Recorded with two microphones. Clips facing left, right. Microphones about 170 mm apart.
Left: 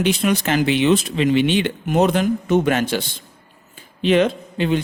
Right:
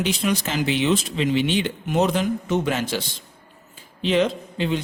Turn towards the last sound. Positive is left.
turn(degrees=60)  # may be behind; listen again after turning